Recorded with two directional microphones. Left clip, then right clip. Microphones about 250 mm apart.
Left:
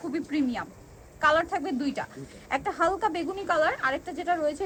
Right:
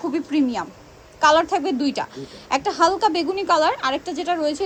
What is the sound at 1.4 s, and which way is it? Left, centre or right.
A woman's voice, left.